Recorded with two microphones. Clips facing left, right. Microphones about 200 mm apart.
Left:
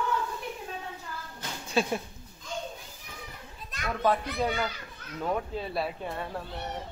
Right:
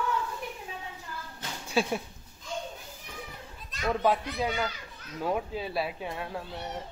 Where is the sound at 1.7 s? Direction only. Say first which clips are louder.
Even; 5° right (ahead or behind).